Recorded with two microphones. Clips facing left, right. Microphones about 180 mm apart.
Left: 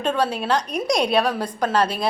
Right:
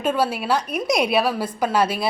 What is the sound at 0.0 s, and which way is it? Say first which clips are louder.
A woman's voice: right 1 dB; 5° right (ahead or behind).